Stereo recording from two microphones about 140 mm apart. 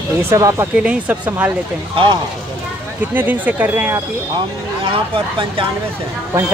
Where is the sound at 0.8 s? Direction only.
10° right (ahead or behind).